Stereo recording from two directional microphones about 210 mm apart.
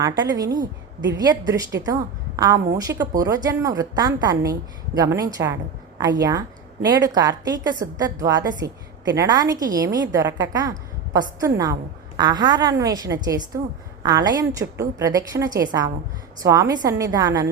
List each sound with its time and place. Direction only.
0.0 s a woman's voice: 20° right (ahead or behind)